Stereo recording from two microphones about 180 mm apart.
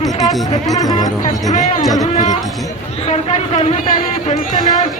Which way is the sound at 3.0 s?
35° left (ahead or behind).